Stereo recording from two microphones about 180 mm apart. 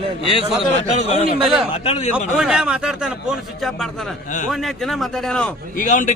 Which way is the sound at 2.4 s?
5° right (ahead or behind).